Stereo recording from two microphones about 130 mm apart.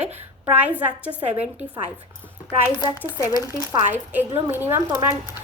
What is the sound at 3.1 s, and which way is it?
Speech, 30° left (ahead or behind).